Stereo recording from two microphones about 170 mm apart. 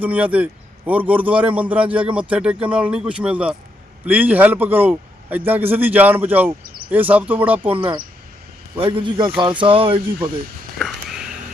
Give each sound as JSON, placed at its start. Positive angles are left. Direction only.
{"t": 0.0, "sound": "a man's voice", "side_deg": -10}
{"t": 8.8, "sound": "a man's voice", "side_deg": -30}
{"t": 10.8, "sound": "a sound", "side_deg": 0}